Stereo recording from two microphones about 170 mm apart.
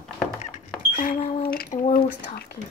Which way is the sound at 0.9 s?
55° left (ahead or behind).